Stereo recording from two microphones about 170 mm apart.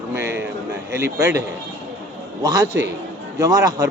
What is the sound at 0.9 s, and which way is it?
Speech, 15° right (ahead or behind).